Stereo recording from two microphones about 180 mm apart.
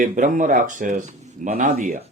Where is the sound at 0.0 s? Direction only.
45° right (ahead or behind).